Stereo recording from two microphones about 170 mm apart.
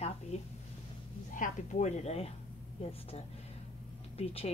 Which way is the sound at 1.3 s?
45° left (ahead or behind).